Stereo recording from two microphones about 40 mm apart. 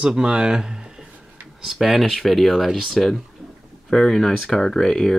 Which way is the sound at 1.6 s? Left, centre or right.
Centre.